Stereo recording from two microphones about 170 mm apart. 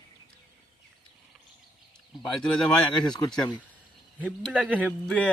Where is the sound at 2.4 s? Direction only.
5° left (ahead or behind).